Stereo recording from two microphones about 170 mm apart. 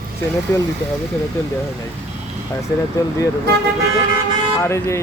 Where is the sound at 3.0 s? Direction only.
20° left (ahead or behind).